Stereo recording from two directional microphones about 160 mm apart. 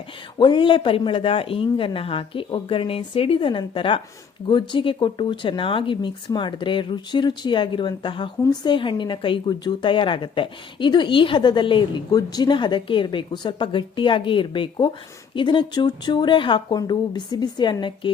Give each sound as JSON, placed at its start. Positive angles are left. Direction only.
{"t": 0.3, "sound": "a woman's voice", "side_deg": 30}